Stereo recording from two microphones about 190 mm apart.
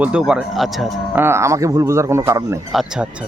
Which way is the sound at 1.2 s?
15° right (ahead or behind).